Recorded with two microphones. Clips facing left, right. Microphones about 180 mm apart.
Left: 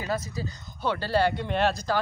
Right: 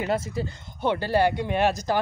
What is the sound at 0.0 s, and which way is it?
A man's voice, 25° right (ahead or behind).